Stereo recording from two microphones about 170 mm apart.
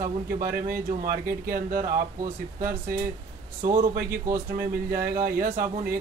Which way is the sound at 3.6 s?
55° right (ahead or behind).